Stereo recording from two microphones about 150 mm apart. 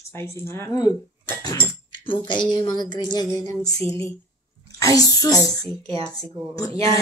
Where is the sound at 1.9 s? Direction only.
30° left (ahead or behind).